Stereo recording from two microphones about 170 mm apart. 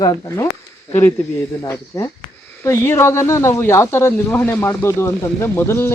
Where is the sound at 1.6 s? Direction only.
15° left (ahead or behind).